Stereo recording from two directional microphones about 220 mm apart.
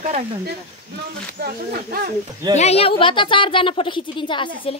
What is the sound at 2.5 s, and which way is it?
Speech, 30° left (ahead or behind).